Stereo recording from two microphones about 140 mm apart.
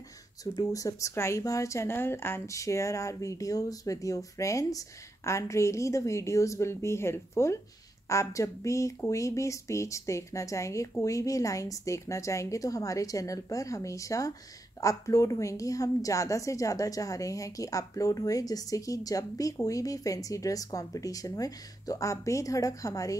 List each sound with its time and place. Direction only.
0.4 s a woman's voice: 25° left (ahead or behind)